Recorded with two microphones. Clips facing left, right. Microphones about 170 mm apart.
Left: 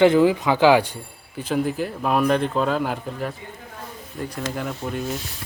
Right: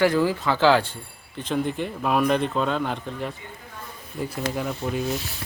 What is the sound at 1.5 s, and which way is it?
Speech, 5° left (ahead or behind).